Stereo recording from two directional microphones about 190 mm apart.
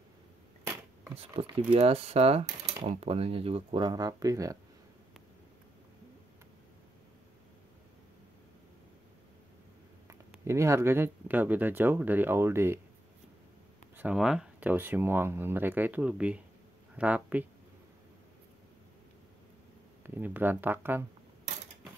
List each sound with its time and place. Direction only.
1.1 s speech: 30° right (ahead or behind)
10.0 s speech: 15° right (ahead or behind)
13.9 s speech: 5° right (ahead or behind)
20.2 s speech: 10° right (ahead or behind)